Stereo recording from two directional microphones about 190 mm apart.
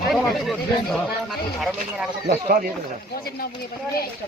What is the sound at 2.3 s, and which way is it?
Speech, 50° right (ahead or behind).